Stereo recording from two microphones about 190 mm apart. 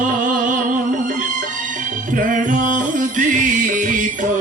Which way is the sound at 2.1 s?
40° right (ahead or behind).